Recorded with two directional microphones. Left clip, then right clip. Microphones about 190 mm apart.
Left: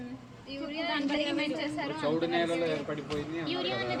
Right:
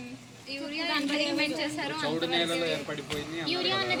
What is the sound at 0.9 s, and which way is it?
Speech, centre (ahead or behind).